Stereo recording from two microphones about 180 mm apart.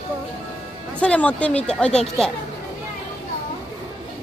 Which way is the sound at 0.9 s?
5° left (ahead or behind).